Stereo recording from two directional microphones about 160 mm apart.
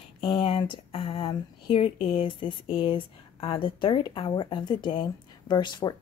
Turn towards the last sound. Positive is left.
turn(degrees=30)  # may be behind; listen again after turning